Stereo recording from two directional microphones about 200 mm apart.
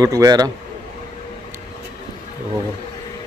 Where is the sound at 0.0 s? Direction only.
15° right (ahead or behind).